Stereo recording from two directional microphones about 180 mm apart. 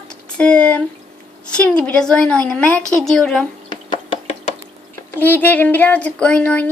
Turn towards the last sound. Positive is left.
turn(degrees=10)  # may be behind; listen again after turning